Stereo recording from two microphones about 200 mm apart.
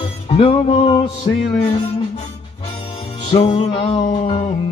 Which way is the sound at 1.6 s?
30° left (ahead or behind).